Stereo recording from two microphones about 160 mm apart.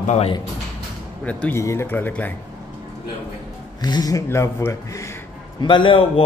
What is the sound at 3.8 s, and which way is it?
A man's voice, 25° left (ahead or behind).